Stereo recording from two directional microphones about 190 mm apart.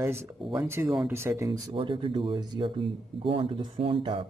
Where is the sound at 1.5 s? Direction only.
25° right (ahead or behind).